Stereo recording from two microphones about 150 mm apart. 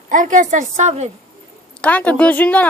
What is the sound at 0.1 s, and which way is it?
A woman's voice, 60° right (ahead or behind).